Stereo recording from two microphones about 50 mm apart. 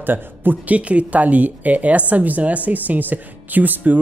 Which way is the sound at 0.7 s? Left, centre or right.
Right.